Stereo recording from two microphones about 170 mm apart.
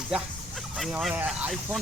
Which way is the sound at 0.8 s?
Centre (ahead or behind).